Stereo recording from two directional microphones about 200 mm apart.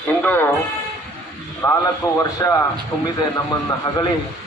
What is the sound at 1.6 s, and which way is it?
Radio, 15° left (ahead or behind).